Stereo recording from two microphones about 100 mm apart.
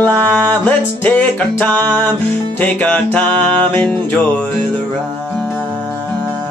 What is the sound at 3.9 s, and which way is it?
Music, 5° left (ahead or behind).